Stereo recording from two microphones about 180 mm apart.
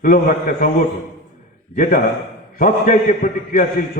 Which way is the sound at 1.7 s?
50° left (ahead or behind).